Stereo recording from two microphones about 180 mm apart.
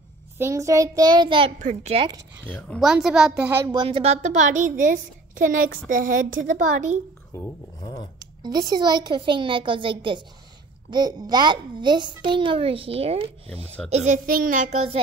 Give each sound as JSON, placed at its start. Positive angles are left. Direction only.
{"t": 0.4, "sound": "a child's voice", "side_deg": -15}
{"t": 1.6, "sound": "a child's voice", "side_deg": -40}
{"t": 2.4, "sound": "speech", "side_deg": 10}
{"t": 2.8, "sound": "a child's voice", "side_deg": -5}
{"t": 3.7, "sound": "a woman's voice", "side_deg": -30}
{"t": 7.3, "sound": "speech", "side_deg": 20}
{"t": 8.2, "sound": "a child's voice", "side_deg": -20}